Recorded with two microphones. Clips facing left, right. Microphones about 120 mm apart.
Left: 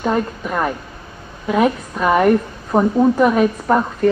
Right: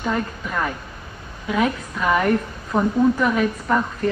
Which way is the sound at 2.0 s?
35° left (ahead or behind).